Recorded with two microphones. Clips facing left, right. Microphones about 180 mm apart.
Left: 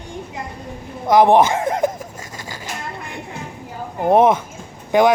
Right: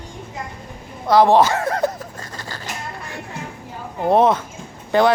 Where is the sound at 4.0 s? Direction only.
20° left (ahead or behind).